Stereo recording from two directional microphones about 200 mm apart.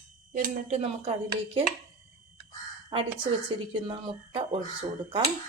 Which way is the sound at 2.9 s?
30° right (ahead or behind).